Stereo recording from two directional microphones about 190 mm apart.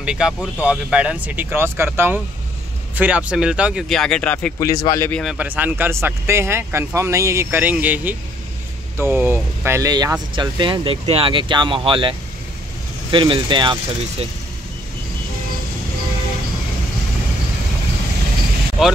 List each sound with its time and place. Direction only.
0.0 s speech: 5° right (ahead or behind); by 5.1 s 15° left (ahead or behind)
5.1 s speech: centre (ahead or behind); by 14.2 s 25° right (ahead or behind)